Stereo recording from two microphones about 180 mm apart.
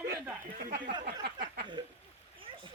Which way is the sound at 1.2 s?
65° right (ahead or behind).